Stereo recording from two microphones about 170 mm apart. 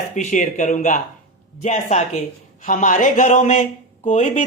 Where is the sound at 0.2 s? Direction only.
50° left (ahead or behind).